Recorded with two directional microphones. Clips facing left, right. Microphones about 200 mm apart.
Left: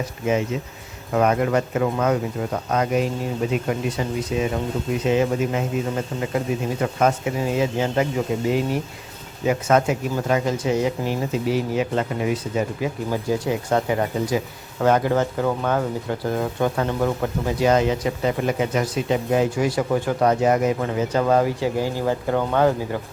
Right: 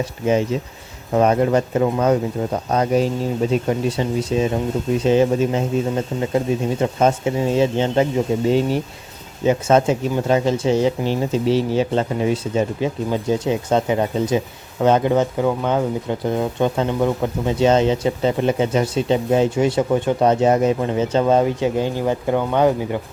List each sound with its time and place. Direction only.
1.1 s speech: 30° right (ahead or behind)